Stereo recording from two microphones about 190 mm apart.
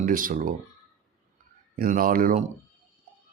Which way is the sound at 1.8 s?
50° right (ahead or behind).